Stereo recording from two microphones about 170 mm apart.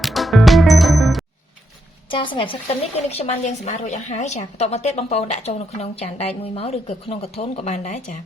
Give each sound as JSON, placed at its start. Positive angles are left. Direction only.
{"t": 0.0, "sound": "music", "side_deg": 0}
{"t": 2.0, "sound": "a woman's voice", "side_deg": 30}
{"t": 3.1, "sound": "a woman's voice", "side_deg": 40}